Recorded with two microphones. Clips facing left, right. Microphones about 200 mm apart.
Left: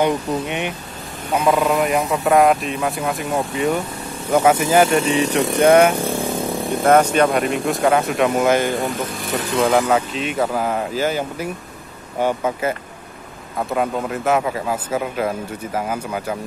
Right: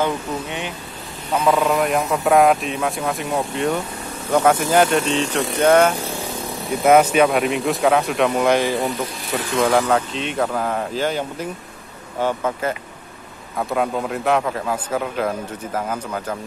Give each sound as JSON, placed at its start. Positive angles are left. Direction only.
{"t": 0.0, "sound": "speech", "side_deg": 20}
{"t": 1.3, "sound": "speech", "side_deg": 5}
{"t": 6.1, "sound": "vehicle", "side_deg": 50}
{"t": 6.8, "sound": "speech", "side_deg": -5}
{"t": 13.6, "sound": "speech", "side_deg": 0}